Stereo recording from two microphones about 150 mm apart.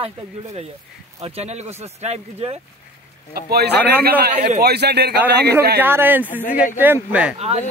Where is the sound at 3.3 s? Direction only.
90° right.